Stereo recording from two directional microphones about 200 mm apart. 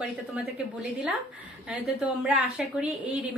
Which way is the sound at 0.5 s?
5° right (ahead or behind).